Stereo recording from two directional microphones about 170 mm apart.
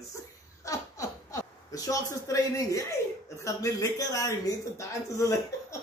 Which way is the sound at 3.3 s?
20° left (ahead or behind).